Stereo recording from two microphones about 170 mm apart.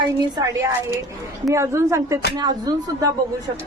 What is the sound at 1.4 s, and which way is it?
A woman's voice, 15° right (ahead or behind).